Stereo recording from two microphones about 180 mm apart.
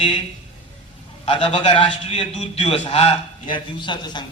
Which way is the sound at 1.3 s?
30° left (ahead or behind).